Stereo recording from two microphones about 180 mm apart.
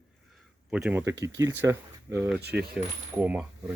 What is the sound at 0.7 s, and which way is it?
Speech, 10° right (ahead or behind).